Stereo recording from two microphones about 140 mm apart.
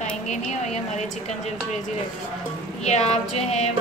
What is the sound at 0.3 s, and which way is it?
A woman's voice, 55° left (ahead or behind).